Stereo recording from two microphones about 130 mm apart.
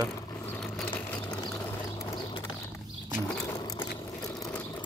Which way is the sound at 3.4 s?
30° left (ahead or behind).